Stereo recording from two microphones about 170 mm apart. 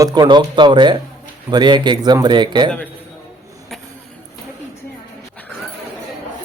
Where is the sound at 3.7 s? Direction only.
Centre (ahead or behind).